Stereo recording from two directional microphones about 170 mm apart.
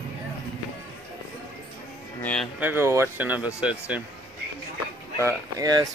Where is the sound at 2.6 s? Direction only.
15° right (ahead or behind).